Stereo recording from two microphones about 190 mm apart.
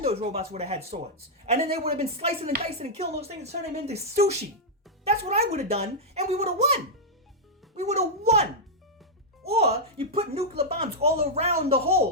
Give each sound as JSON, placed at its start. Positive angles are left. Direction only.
{"t": 0.0, "sound": "a woman's voice", "side_deg": -30}
{"t": 7.8, "sound": "a woman's voice", "side_deg": -35}
{"t": 9.5, "sound": "a woman's voice", "side_deg": -35}